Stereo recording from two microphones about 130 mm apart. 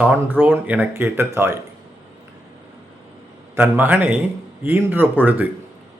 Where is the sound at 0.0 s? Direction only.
15° right (ahead or behind).